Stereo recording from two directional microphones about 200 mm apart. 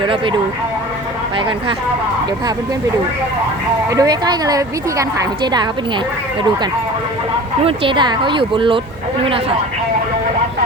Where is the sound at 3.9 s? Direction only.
20° right (ahead or behind).